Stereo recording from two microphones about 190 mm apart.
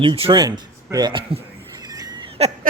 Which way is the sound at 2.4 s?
35° right (ahead or behind).